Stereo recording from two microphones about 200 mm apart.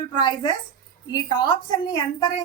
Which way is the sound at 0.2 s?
20° left (ahead or behind).